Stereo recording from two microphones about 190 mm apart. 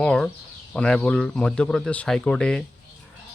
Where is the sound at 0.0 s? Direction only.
5° left (ahead or behind).